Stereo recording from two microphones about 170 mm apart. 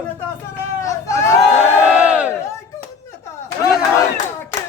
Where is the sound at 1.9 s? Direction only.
10° right (ahead or behind).